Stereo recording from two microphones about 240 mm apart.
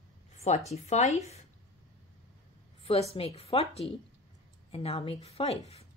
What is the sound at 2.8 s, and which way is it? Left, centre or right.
A woman's voice, left.